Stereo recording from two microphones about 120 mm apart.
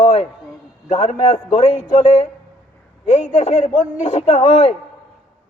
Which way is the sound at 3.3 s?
70° left (ahead or behind).